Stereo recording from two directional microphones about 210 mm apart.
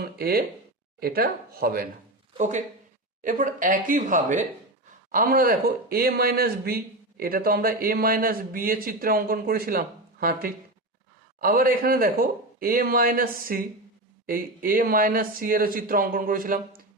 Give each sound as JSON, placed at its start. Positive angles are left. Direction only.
{"t": 0.0, "sound": "speech", "side_deg": -45}
{"t": 3.2, "sound": "speech", "side_deg": -40}